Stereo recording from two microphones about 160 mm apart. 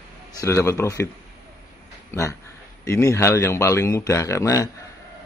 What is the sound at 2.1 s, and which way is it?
A man's voice, 20° left (ahead or behind).